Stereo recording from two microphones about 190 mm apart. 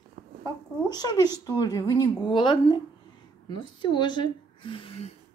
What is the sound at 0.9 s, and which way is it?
Speech, 20° left (ahead or behind).